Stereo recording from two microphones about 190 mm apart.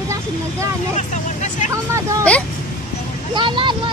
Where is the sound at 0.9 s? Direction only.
40° left (ahead or behind).